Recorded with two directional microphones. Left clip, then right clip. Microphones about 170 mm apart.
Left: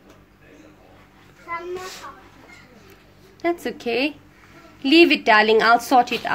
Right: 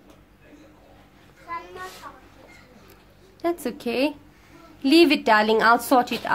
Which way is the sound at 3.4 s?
15° right (ahead or behind).